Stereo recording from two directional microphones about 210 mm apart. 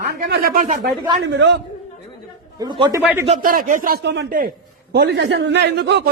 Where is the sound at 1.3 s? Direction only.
60° right (ahead or behind).